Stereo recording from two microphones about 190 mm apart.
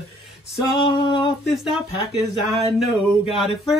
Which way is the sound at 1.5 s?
Centre (ahead or behind).